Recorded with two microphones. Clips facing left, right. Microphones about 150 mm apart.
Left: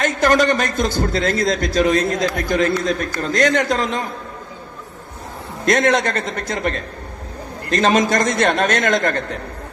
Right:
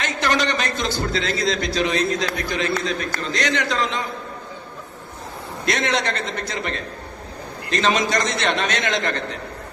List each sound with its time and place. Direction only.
0.0 s a man's voice: 45° left (ahead or behind)
5.6 s a man's voice: 45° left (ahead or behind)